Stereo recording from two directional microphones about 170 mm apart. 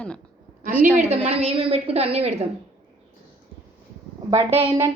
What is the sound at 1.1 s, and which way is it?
A woman's voice, 35° right (ahead or behind).